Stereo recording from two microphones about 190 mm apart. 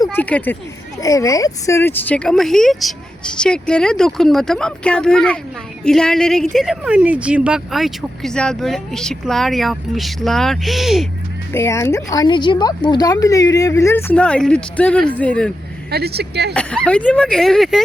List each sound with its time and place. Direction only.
0.0 s speech: 10° left (ahead or behind)
11.5 s speech: 15° left (ahead or behind)
15.9 s speech: 55° right (ahead or behind)
16.6 s speech: 5° left (ahead or behind)